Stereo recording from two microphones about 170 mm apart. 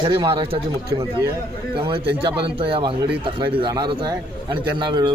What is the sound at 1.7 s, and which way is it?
A man's voice, 30° right (ahead or behind).